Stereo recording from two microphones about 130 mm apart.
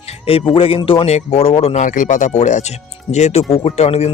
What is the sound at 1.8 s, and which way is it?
Speech, 80° left.